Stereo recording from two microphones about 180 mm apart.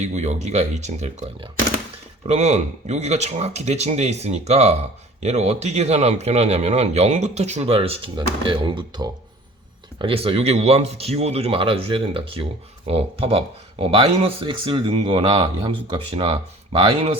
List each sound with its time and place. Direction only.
0.0 s a man's voice: 40° right (ahead or behind)